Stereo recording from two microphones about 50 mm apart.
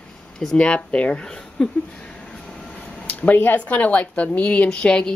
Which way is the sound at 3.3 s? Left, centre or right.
Left.